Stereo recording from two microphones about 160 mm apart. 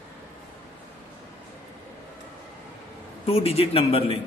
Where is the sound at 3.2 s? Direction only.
40° left (ahead or behind).